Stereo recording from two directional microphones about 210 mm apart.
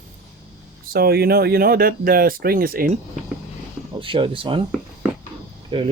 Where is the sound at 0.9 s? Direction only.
45° right (ahead or behind).